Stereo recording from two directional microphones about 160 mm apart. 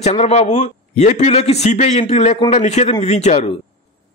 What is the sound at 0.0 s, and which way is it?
A man's voice, 40° left (ahead or behind).